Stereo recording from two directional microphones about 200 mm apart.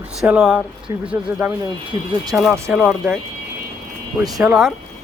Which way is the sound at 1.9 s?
30° left (ahead or behind).